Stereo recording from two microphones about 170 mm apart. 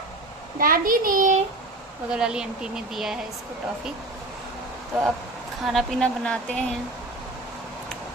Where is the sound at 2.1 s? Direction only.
5° right (ahead or behind).